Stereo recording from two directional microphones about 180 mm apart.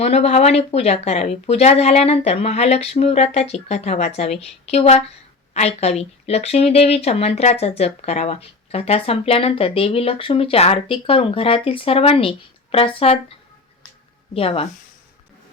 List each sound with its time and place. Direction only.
0.0 s a woman's voice: 35° left (ahead or behind)
14.3 s a woman's voice: 35° left (ahead or behind)